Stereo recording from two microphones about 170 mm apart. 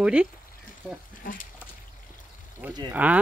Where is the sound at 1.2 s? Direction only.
55° left (ahead or behind).